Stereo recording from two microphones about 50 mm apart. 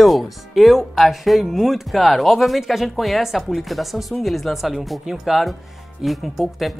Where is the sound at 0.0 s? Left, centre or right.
Centre.